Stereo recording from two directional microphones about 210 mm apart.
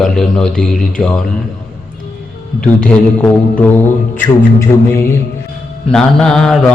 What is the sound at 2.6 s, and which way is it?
Mantra, 5° left (ahead or behind).